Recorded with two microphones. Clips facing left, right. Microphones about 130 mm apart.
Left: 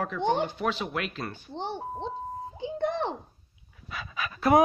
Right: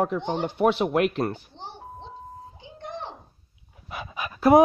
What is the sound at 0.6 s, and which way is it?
Speech, 65° right (ahead or behind).